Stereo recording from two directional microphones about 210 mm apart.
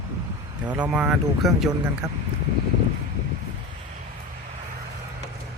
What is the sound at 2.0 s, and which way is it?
Speech, 15° right (ahead or behind).